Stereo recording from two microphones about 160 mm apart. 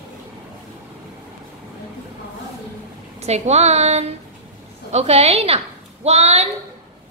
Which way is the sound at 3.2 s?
45° right (ahead or behind).